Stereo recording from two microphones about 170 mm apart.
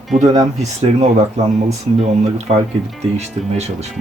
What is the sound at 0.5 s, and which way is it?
Speech, 40° right (ahead or behind).